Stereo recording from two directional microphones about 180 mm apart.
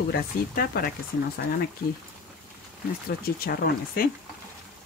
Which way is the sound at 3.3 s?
55° left (ahead or behind).